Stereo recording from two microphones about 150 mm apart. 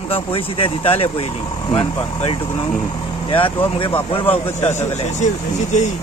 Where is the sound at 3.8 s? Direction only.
35° left (ahead or behind).